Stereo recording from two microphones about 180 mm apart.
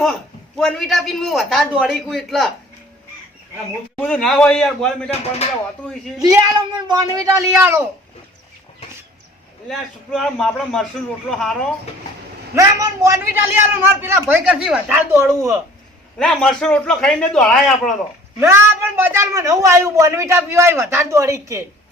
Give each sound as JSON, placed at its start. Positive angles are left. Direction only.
{"t": 0.6, "sound": "a man's voice", "side_deg": 0}
{"t": 3.9, "sound": "a man's voice", "side_deg": 5}
{"t": 6.1, "sound": "speech", "side_deg": -20}
{"t": 9.6, "sound": "a man's voice", "side_deg": 0}
{"t": 12.5, "sound": "speech", "side_deg": -15}
{"t": 16.1, "sound": "a man's voice", "side_deg": 5}
{"t": 18.3, "sound": "speech", "side_deg": -15}